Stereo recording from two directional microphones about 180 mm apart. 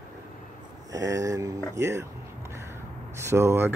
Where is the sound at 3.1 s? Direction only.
15° right (ahead or behind).